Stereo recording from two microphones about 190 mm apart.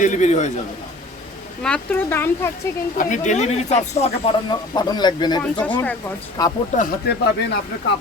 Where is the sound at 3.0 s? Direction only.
40° left (ahead or behind).